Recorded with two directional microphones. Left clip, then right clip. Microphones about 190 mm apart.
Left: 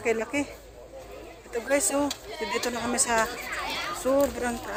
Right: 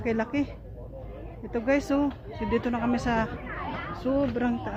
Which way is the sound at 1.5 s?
35° left (ahead or behind).